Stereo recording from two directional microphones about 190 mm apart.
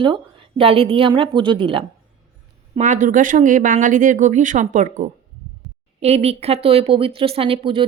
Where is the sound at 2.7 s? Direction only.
40° right (ahead or behind).